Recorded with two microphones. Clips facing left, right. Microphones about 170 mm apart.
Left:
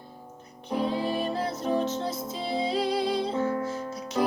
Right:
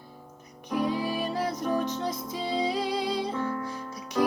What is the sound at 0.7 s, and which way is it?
Music, 25° left (ahead or behind).